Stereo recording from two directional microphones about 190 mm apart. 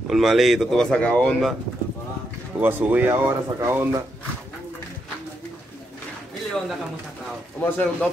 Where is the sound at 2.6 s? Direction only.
10° right (ahead or behind).